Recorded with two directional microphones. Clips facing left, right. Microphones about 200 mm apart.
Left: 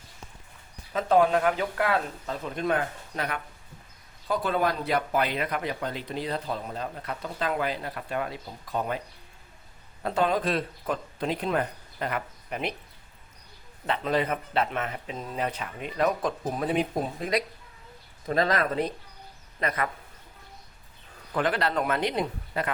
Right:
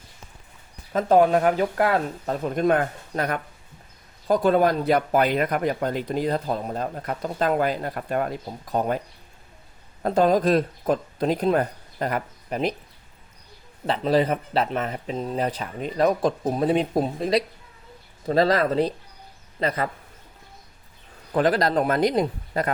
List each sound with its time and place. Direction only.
0.9 s speech: 45° right (ahead or behind)
10.0 s speech: 40° right (ahead or behind)
13.8 s a man's voice: 35° right (ahead or behind)
21.3 s speech: 35° right (ahead or behind)